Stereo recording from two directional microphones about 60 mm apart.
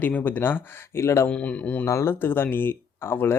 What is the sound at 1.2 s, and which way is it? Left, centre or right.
Speech, left.